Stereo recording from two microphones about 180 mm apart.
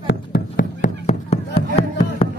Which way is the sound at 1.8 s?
30° left (ahead or behind).